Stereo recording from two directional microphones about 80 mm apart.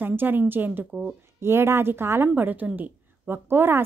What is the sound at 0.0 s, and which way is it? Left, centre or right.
A woman's voice, right.